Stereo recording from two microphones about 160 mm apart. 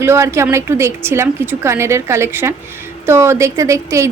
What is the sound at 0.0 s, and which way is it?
A woman's voice, 15° right (ahead or behind).